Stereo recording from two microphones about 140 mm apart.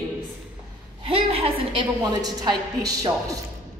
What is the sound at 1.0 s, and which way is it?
Speech, 45° right (ahead or behind).